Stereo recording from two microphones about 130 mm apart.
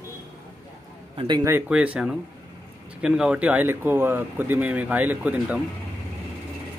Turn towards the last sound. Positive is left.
turn(degrees=-10)  # may be behind; listen again after turning